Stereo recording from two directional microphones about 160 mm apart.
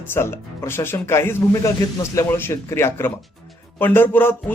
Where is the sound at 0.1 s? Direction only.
15° left (ahead or behind).